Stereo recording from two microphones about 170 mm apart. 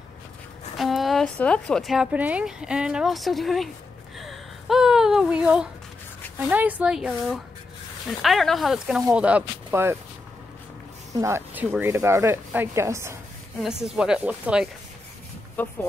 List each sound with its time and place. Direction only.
0.7 s a woman's voice: centre (ahead or behind)
4.2 s a sound: centre (ahead or behind)
6.5 s speech: 5° right (ahead or behind)
11.1 s speech: 15° right (ahead or behind)
13.6 s speech: 5° right (ahead or behind)
15.6 s speech: 10° left (ahead or behind)